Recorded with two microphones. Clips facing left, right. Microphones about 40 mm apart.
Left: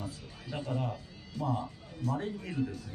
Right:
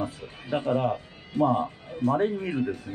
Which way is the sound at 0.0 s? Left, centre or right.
Right.